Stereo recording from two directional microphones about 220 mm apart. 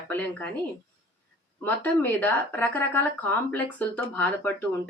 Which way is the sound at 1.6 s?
10° left (ahead or behind).